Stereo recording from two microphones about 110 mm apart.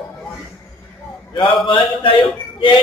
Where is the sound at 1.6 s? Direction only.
50° left (ahead or behind).